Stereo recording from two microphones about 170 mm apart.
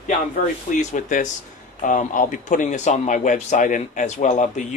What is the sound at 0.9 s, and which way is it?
A man's voice, 45° left (ahead or behind).